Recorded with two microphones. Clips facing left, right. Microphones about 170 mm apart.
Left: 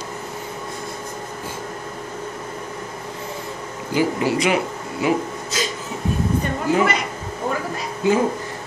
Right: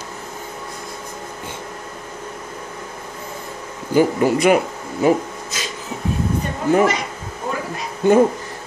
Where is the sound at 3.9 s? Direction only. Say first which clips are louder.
Right 4 dB; 50° right (ahead or behind).